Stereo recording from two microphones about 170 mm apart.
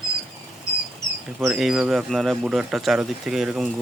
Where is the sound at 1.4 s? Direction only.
Centre (ahead or behind).